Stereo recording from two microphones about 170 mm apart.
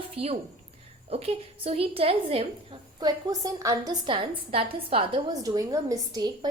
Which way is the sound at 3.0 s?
25° right (ahead or behind).